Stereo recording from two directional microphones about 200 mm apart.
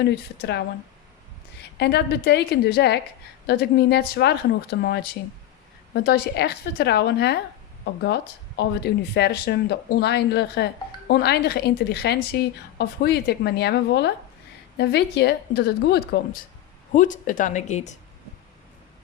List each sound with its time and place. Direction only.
0.0 s a woman's voice: 55° left (ahead or behind)
1.8 s a woman's voice: 55° left (ahead or behind)
16.9 s speech: 40° left (ahead or behind)